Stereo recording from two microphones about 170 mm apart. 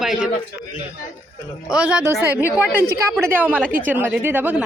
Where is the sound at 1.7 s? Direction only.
5° right (ahead or behind).